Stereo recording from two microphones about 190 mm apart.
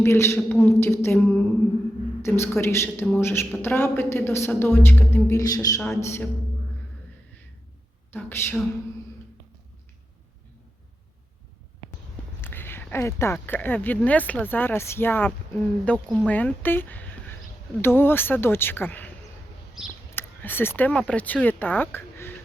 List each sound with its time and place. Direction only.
0.0 s speech: 15° left (ahead or behind)
8.1 s speech: 10° left (ahead or behind)
12.4 s speech: 10° left (ahead or behind)
20.1 s speech: 10° left (ahead or behind)